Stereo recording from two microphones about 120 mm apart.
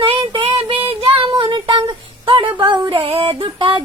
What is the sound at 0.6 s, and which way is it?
Child singing, 50° right (ahead or behind).